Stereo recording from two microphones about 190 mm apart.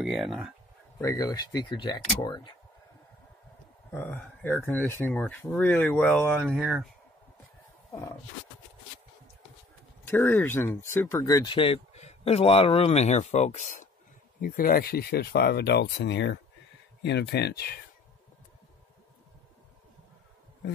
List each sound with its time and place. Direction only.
0.0 s speech: centre (ahead or behind)
1.0 s speech: 20° left (ahead or behind)
3.9 s speech: 10° left (ahead or behind)
10.0 s speech: 10° left (ahead or behind); by 13.7 s 40° left (ahead or behind)
14.4 s speech: 50° left (ahead or behind)